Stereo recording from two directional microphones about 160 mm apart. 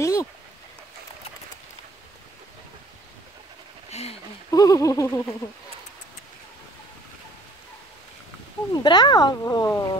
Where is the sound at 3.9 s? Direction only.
40° left (ahead or behind).